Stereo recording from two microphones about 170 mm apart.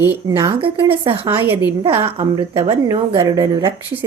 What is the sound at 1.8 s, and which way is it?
A woman's voice, 30° right (ahead or behind).